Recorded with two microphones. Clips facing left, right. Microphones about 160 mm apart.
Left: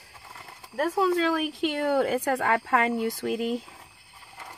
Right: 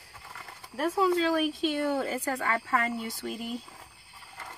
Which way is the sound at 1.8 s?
75° left (ahead or behind).